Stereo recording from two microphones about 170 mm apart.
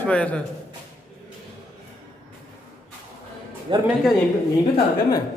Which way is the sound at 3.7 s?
30° right (ahead or behind).